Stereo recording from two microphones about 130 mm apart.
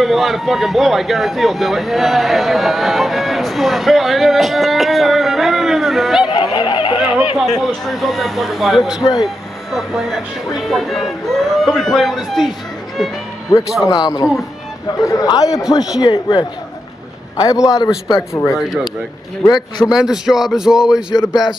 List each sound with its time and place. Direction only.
0.0 s speech: centre (ahead or behind)
6.3 s honk: 35° left (ahead or behind)
7.0 s a sound: 10° right (ahead or behind)
7.9 s speech: centre (ahead or behind)
13.5 s a man's voice: 30° left (ahead or behind)
19.9 s speech: 5° right (ahead or behind)